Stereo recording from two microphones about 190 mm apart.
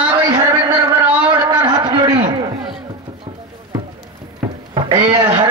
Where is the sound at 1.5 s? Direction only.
25° right (ahead or behind).